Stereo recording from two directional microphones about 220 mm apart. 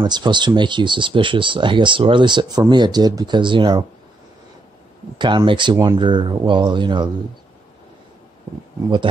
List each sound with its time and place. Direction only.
0.0 s speech: 20° right (ahead or behind)
5.2 s speech: 20° right (ahead or behind)